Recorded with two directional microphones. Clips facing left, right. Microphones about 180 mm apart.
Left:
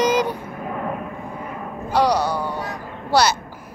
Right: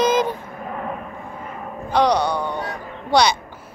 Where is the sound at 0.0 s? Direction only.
10° left (ahead or behind).